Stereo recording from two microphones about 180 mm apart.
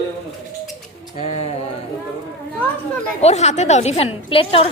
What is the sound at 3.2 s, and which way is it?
A woman's voice, 35° left (ahead or behind).